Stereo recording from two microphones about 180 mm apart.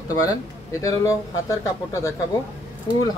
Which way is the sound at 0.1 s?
20° left (ahead or behind).